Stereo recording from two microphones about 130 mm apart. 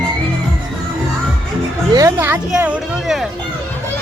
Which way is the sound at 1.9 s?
20° right (ahead or behind).